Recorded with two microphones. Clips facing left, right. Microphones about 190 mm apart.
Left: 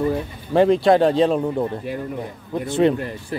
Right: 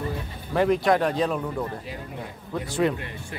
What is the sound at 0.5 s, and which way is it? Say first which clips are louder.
Speech: left 6 dB; 30° left (ahead or behind).